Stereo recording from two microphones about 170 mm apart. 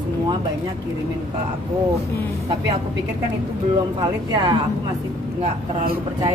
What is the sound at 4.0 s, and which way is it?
Speech, 20° right (ahead or behind).